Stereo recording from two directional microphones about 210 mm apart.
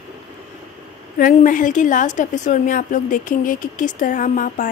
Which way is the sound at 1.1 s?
40° left (ahead or behind).